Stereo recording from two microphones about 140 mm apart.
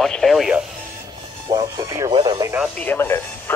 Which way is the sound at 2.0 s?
35° right (ahead or behind).